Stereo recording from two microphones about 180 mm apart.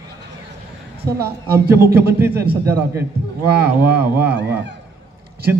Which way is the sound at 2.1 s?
10° right (ahead or behind).